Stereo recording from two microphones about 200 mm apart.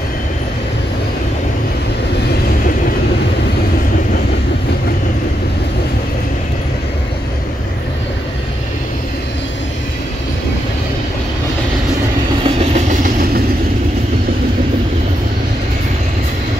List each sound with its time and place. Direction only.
12.4 s train: 40° right (ahead or behind)